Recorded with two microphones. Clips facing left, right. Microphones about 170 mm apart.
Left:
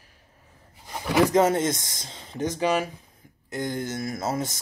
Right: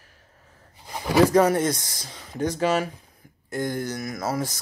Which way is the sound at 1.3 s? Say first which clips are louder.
Right 1 dB; 20° left (ahead or behind).